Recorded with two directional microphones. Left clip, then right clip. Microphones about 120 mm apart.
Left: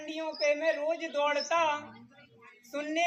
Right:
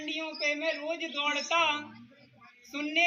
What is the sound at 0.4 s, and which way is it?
Speech, 45° left (ahead or behind).